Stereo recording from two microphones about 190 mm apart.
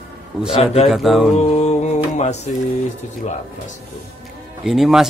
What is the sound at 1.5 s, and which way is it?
Music, 35° left (ahead or behind).